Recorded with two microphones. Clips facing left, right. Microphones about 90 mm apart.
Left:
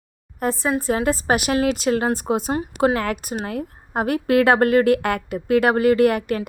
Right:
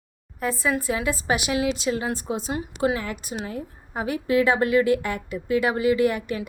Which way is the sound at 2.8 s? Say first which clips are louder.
Left 5 dB; 70° left (ahead or behind).